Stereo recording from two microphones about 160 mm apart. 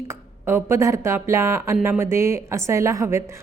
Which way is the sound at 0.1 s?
15° right (ahead or behind).